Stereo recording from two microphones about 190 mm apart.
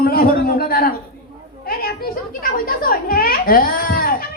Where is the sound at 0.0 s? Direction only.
50° left (ahead or behind).